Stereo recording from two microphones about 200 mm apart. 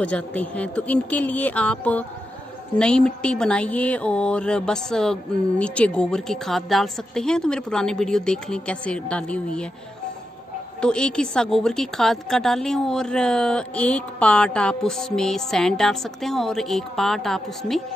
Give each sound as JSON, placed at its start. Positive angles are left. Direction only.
{"t": 0.0, "sound": "a woman's voice", "side_deg": 5}
{"t": 10.8, "sound": "a woman's voice", "side_deg": 5}